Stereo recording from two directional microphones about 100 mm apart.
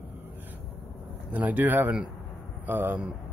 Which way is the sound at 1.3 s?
15° right (ahead or behind).